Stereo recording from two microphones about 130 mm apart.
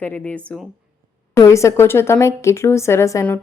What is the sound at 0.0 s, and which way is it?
Speech, 10° left (ahead or behind).